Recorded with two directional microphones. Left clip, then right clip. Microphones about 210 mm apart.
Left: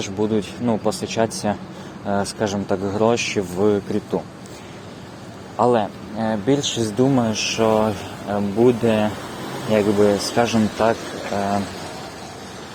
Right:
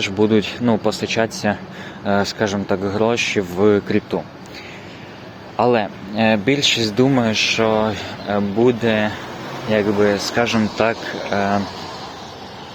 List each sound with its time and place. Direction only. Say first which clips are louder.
0.0 s speech: right 5 dB; 15° right (ahead or behind)
5.5 s speech: right 1 dB; 15° right (ahead or behind)
9.6 s speech: even; centre (ahead or behind)